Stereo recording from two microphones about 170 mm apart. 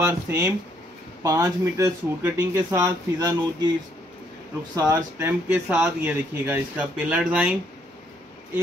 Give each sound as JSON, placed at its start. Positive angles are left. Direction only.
{"t": 0.0, "sound": "speech", "side_deg": -15}
{"t": 4.7, "sound": "speech", "side_deg": -20}
{"t": 5.5, "sound": "speech", "side_deg": -10}